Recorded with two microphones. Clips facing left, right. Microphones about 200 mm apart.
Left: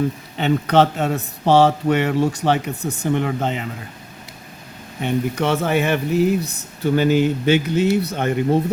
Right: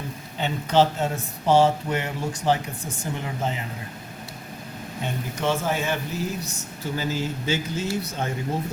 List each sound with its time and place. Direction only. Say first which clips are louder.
0.3 s speech: left 4 dB; 65° left (ahead or behind)
4.9 s speech: left 10 dB; 70° left (ahead or behind)